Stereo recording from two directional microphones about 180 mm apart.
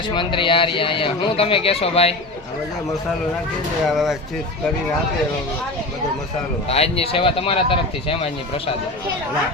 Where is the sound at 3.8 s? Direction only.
Centre (ahead or behind).